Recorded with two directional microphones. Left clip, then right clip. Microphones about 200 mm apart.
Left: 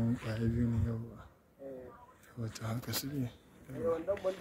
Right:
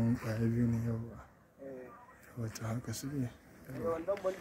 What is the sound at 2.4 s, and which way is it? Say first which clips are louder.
Speech: even; 5° right (ahead or behind).